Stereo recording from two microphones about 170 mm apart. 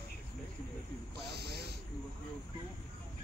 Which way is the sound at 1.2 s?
75° right (ahead or behind).